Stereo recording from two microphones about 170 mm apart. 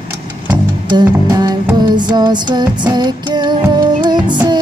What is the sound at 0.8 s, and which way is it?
Music, 25° right (ahead or behind).